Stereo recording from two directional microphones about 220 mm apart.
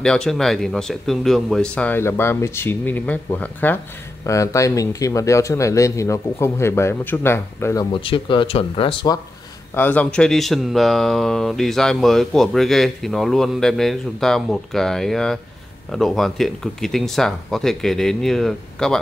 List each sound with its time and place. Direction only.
0.0 s speech: 5° left (ahead or behind)
7.9 s speech: 25° left (ahead or behind)
9.8 s speech: 5° left (ahead or behind)